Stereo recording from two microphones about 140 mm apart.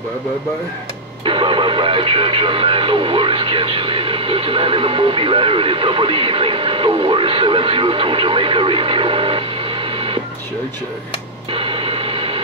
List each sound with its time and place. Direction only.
1.2 s speech: 40° right (ahead or behind)
11.5 s radio: 40° right (ahead or behind)